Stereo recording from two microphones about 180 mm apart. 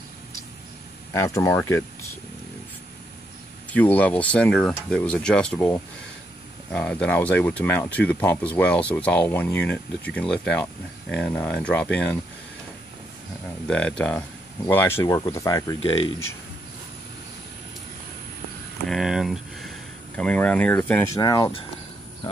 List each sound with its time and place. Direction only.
1.1 s speech: 15° left (ahead or behind)
3.7 s speech: 10° left (ahead or behind)
13.7 s speech: 5° left (ahead or behind)
18.9 s speech: centre (ahead or behind)
21.2 s speech: 20° left (ahead or behind)